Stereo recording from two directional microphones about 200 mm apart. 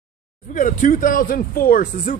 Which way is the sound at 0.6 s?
40° left (ahead or behind).